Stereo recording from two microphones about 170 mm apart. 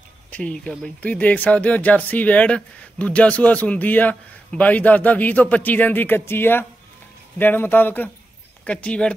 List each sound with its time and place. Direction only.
0.3 s speech: 5° left (ahead or behind)